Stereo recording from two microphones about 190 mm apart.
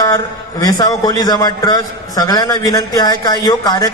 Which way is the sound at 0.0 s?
20° left (ahead or behind).